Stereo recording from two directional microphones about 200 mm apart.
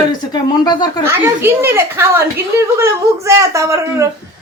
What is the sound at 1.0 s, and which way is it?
Speech, 10° right (ahead or behind).